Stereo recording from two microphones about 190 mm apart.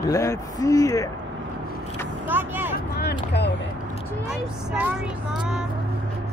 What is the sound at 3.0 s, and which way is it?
Speech, 60° left (ahead or behind).